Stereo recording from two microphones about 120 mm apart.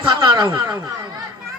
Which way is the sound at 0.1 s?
35° right (ahead or behind).